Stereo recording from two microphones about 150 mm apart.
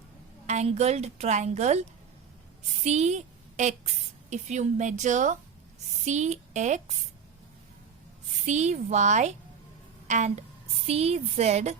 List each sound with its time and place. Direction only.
0.4 s a woman's voice: 50° right (ahead or behind)
8.4 s a woman's voice: 50° right (ahead or behind)